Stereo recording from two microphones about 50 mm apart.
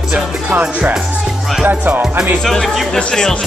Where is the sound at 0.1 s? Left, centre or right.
Right.